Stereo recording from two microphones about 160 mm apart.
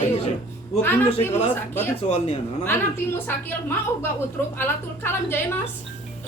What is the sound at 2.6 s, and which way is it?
A woman's voice, 15° left (ahead or behind).